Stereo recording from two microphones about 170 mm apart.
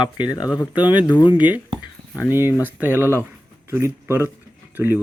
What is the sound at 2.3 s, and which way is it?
Speech, 15° right (ahead or behind).